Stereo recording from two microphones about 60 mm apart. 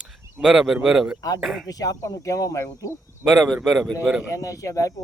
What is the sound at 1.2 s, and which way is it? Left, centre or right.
Speech, left.